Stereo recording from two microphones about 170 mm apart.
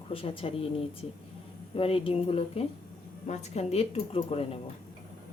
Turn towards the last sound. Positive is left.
turn(degrees=35)  # may be behind; listen again after turning